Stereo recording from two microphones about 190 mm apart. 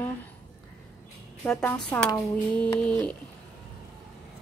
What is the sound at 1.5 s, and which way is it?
Speech, 5° left (ahead or behind).